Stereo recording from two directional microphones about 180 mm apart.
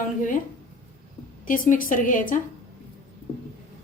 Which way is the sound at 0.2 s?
45° left (ahead or behind).